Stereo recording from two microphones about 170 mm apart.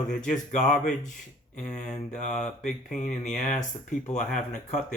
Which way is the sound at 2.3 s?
5° left (ahead or behind).